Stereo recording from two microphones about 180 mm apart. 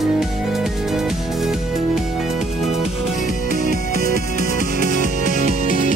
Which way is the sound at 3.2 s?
45° left (ahead or behind).